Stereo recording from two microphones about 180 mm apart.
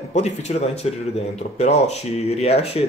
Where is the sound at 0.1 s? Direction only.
40° left (ahead or behind).